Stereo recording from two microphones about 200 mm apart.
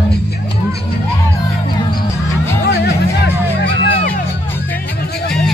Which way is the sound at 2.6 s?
55° left (ahead or behind).